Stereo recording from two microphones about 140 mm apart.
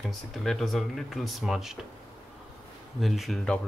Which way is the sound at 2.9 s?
Centre (ahead or behind).